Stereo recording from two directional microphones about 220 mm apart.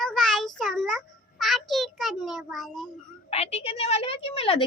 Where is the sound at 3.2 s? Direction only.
30° left (ahead or behind).